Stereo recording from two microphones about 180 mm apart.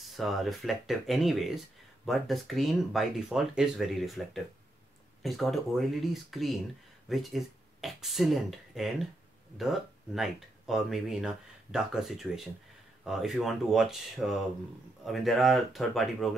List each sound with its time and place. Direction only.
0.1 s speech: centre (ahead or behind)